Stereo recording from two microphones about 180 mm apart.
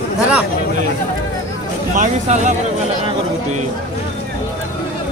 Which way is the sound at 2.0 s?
40° right (ahead or behind).